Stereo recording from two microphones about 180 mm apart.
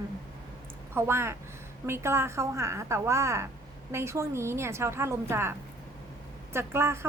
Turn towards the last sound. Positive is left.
turn(degrees=-15)  # may be behind; listen again after turning